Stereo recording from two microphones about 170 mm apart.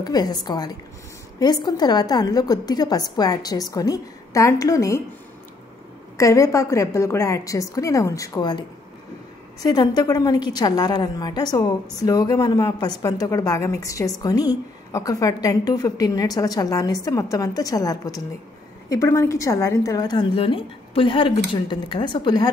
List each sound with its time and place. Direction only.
0.0 s a woman's voice: 20° left (ahead or behind)
6.1 s a woman's voice: 20° left (ahead or behind)